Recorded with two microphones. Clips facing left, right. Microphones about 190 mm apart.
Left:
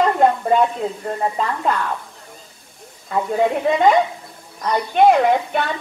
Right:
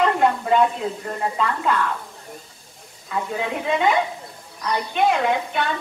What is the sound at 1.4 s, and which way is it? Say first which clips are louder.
Speech: right 2 dB; 45° left (ahead or behind).